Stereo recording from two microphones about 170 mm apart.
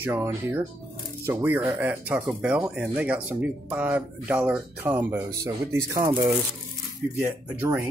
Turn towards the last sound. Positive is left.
turn(degrees=-15)  # may be behind; listen again after turning